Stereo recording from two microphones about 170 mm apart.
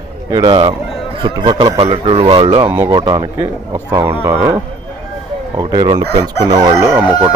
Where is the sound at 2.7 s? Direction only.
15° right (ahead or behind).